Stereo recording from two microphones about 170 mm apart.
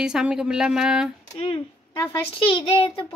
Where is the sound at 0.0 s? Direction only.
5° right (ahead or behind).